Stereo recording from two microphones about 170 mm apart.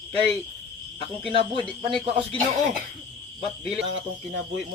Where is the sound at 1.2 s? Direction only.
35° right (ahead or behind).